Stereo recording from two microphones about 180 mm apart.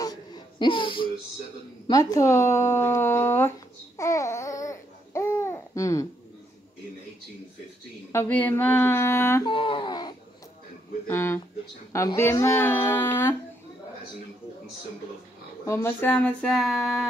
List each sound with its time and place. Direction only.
0.0 s a sound: 25° left (ahead or behind)
8.1 s speech: 10° left (ahead or behind)
9.5 s speech: 30° left (ahead or behind); by 13.4 s 10° left (ahead or behind)
15.6 s speech: 15° left (ahead or behind)